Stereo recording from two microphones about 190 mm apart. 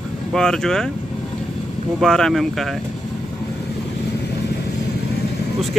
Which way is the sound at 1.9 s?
5° left (ahead or behind).